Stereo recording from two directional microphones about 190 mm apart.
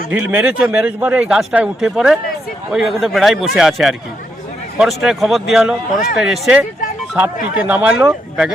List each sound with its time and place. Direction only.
0.1 s a man's voice: 5° right (ahead or behind)
7.7 s a man's voice: 5° right (ahead or behind)